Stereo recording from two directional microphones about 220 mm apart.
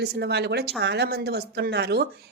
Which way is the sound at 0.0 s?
50° right (ahead or behind).